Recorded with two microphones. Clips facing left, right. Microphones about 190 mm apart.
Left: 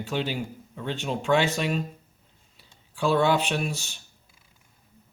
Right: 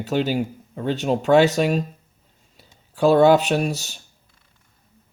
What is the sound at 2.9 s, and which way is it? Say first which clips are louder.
Speech: right 8 dB; 40° right (ahead or behind).